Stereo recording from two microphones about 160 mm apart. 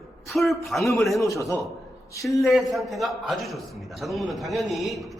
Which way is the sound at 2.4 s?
Centre (ahead or behind).